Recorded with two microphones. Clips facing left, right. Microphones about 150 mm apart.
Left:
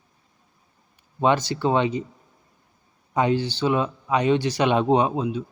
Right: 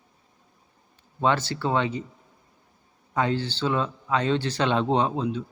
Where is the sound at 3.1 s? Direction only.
15° left (ahead or behind).